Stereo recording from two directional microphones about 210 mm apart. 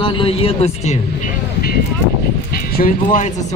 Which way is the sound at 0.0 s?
25° left (ahead or behind).